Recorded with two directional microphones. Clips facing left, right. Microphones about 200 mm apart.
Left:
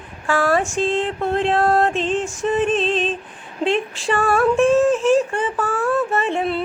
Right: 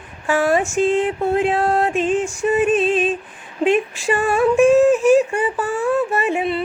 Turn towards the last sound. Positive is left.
turn(degrees=-10)  # may be behind; listen again after turning